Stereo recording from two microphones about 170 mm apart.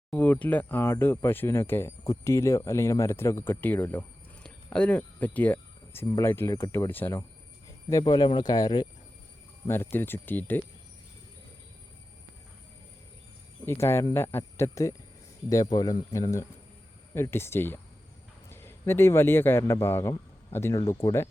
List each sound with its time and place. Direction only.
0.1 s speech: 10° left (ahead or behind); by 8.9 s 25° left (ahead or behind)
9.6 s speech: 15° left (ahead or behind)
13.7 s speech: 15° left (ahead or behind)